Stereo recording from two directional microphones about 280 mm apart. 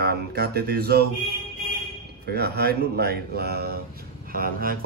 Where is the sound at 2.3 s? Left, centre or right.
Right.